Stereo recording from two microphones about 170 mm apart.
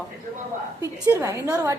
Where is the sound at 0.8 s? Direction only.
15° right (ahead or behind).